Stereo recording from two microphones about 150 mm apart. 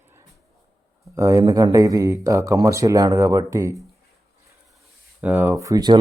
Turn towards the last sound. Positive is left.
turn(degrees=-25)  # may be behind; listen again after turning